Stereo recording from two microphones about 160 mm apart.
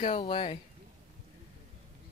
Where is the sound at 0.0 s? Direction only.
40° left (ahead or behind).